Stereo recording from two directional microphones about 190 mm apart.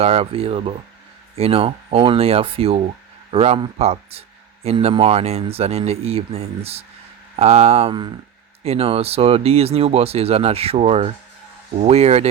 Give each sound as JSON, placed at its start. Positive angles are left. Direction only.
{"t": 0.0, "sound": "speech", "side_deg": -30}